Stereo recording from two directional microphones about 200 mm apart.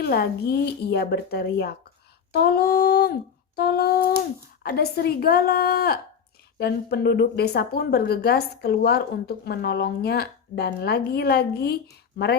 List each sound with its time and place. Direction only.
0.0 s speech: 55° left (ahead or behind)